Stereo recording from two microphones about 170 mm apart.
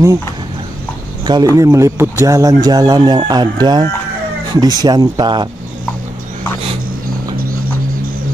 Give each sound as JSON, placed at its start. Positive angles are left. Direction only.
{"t": 1.2, "sound": "speech", "side_deg": -25}